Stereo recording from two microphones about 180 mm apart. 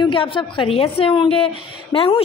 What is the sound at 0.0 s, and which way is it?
A woman's voice, 30° left (ahead or behind).